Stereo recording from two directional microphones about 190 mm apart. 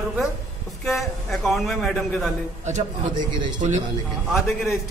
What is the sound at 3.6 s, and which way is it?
Speech, 35° right (ahead or behind).